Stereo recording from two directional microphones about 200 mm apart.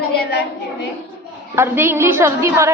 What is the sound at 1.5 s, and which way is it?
A woman's voice, 10° right (ahead or behind).